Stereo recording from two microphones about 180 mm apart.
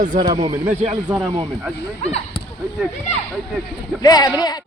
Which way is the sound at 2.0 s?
35° left (ahead or behind).